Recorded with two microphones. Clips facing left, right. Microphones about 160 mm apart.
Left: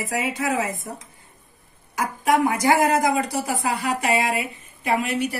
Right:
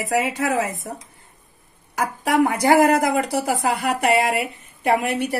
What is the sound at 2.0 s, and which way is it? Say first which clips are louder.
Speech: right 1 dB; 65° right (ahead or behind).